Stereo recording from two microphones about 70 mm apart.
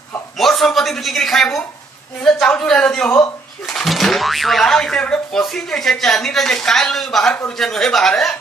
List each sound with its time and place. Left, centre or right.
0.4 s a man's voice: centre
5.4 s speech: centre